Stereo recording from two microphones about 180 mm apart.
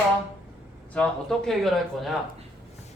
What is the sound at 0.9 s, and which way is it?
Speech, 5° left (ahead or behind).